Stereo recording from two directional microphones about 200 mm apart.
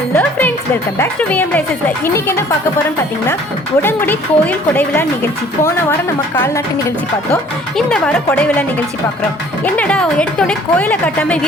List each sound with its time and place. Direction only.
0.2 s music: 10° left (ahead or behind)
0.9 s a woman's voice: 10° left (ahead or behind)
3.8 s a woman's voice: 10° left (ahead or behind)
7.8 s speech: 5° left (ahead or behind)
9.6 s a woman's voice: 5° left (ahead or behind)